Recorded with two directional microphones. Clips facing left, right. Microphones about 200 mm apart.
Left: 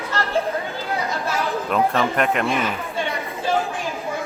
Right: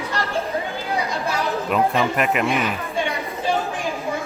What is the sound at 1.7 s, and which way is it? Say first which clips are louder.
Speech: even; 5° right (ahead or behind).